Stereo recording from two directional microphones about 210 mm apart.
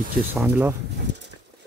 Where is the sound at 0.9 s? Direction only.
55° right (ahead or behind).